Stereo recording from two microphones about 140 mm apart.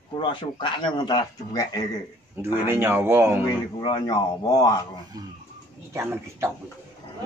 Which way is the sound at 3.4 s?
30° left (ahead or behind).